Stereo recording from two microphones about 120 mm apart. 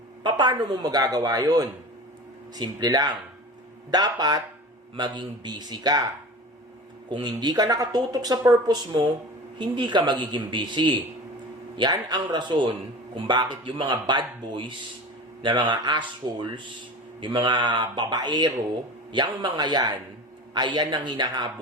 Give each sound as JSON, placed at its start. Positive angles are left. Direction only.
{"t": 0.2, "sound": "speech", "side_deg": -40}
{"t": 7.1, "sound": "speech", "side_deg": -40}